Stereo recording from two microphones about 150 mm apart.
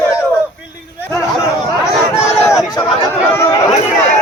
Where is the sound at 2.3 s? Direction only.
5° right (ahead or behind).